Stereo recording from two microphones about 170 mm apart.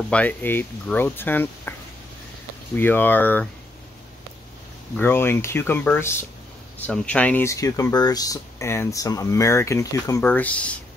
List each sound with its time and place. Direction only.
0.1 s speech: 10° left (ahead or behind)
4.9 s speech: 15° left (ahead or behind)